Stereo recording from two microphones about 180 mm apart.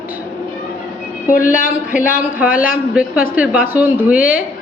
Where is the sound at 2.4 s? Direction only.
5° right (ahead or behind).